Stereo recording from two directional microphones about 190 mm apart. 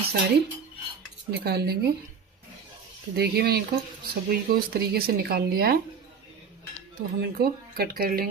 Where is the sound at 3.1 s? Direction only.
60° right (ahead or behind).